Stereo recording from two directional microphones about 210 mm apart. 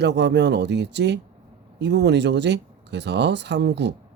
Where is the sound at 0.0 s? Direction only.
55° right (ahead or behind).